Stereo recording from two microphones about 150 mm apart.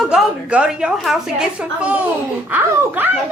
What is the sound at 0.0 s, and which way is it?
A woman's voice, centre (ahead or behind).